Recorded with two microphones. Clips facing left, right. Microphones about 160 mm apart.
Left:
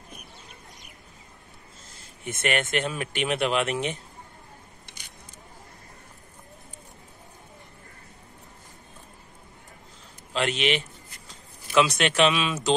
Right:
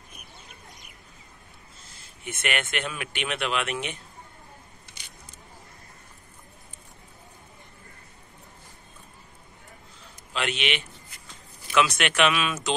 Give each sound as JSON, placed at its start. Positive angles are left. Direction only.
{"t": 2.2, "sound": "speech", "side_deg": 40}
{"t": 10.3, "sound": "speech", "side_deg": 40}